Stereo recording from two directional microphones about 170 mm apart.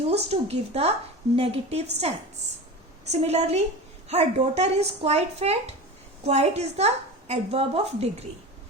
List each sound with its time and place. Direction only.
0.1 s a woman's voice: 40° right (ahead or behind)